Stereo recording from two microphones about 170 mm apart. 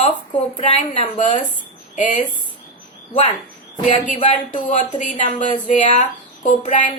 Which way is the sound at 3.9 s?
45° left (ahead or behind).